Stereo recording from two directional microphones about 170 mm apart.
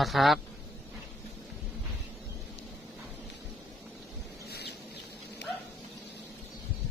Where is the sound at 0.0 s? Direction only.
Centre (ahead or behind).